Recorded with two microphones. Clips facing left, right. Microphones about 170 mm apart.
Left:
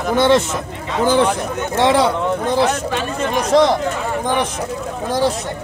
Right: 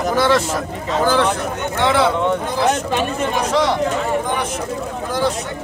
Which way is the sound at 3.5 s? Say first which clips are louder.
Left 6 dB; 40° left (ahead or behind).